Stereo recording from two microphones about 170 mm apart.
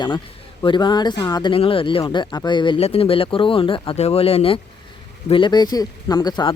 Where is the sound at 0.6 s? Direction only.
25° left (ahead or behind).